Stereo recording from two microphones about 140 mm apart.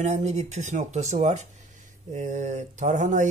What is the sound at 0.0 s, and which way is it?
Speech, 55° right (ahead or behind).